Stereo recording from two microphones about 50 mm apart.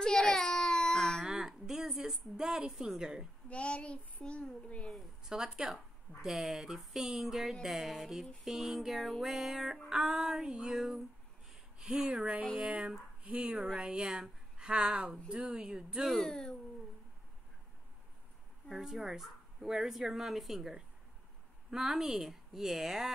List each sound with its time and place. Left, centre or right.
0.0 s baby cry: centre
1.3 s a sound: centre
3.0 s a woman's voice: centre
3.4 s a child's voice: left
5.2 s a woman's voice: centre
11.4 s a sound: centre
12.1 s speech: right
16.1 s speech: centre
18.7 s a woman's voice: centre